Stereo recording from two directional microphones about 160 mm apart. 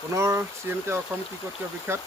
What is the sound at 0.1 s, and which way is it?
Speech, 15° right (ahead or behind).